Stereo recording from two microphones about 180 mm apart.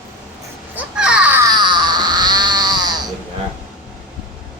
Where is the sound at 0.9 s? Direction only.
5° right (ahead or behind).